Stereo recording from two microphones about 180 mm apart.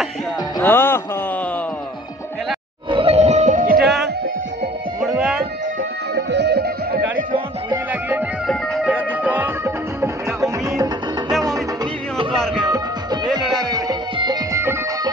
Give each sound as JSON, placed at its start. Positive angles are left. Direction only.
{"t": 0.6, "sound": "music", "side_deg": 10}
{"t": 2.9, "sound": "music", "side_deg": -30}
{"t": 5.0, "sound": "music", "side_deg": -5}
{"t": 6.1, "sound": "music", "side_deg": -70}
{"t": 8.5, "sound": "music", "side_deg": -5}
{"t": 12.4, "sound": "music", "side_deg": 0}
{"t": 12.7, "sound": "music", "side_deg": -25}